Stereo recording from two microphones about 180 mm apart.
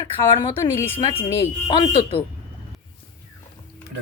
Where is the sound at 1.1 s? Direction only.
30° left (ahead or behind).